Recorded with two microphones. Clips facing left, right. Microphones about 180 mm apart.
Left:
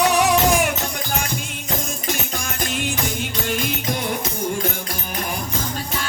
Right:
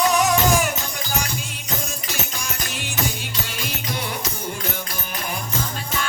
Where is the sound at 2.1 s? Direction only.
50° left (ahead or behind).